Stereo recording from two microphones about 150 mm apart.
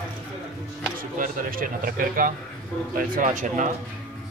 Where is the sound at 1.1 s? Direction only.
70° right (ahead or behind).